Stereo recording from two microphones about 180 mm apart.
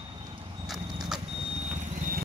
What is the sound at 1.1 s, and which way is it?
Vehicle, 35° right (ahead or behind).